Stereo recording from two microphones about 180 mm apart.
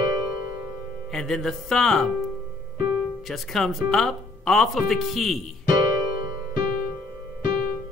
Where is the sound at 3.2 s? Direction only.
Centre (ahead or behind).